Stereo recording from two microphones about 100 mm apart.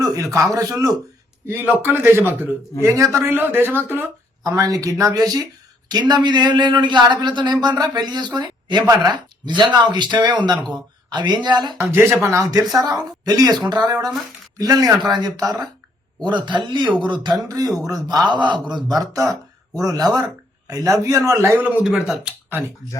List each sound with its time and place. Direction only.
0.0 s a man's voice: 35° right (ahead or behind)
1.5 s a man's voice: 20° right (ahead or behind)
4.4 s a man's voice: 35° right (ahead or behind)
11.8 s a man's voice: 25° right (ahead or behind)
14.9 s speech: 5° right (ahead or behind)
15.2 s a man's voice: 40° right (ahead or behind)
16.2 s speech: 50° right (ahead or behind)
17.8 s a man's voice: 40° right (ahead or behind)
18.3 s speech: 50° right (ahead or behind)
19.1 s a man's voice: 35° right (ahead or behind)
21.8 s speech: 5° right (ahead or behind)
22.4 s speech: 20° right (ahead or behind)